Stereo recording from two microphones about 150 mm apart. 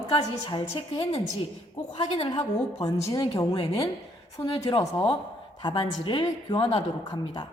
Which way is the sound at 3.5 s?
35° left (ahead or behind).